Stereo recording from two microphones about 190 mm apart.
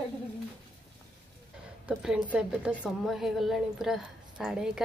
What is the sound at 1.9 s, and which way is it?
A woman's voice, 5° right (ahead or behind).